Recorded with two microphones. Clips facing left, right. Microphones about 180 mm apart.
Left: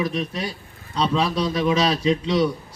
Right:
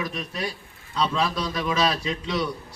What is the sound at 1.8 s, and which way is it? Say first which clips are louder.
Speech: left 4 dB; 20° left (ahead or behind).